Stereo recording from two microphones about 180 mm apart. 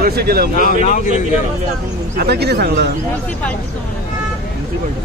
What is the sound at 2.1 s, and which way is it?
Speech, 65° right (ahead or behind).